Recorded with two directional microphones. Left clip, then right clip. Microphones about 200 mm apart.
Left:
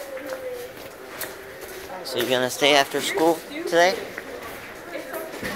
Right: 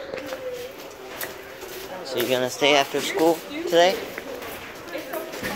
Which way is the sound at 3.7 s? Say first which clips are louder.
Right 1 dB; 15° right (ahead or behind).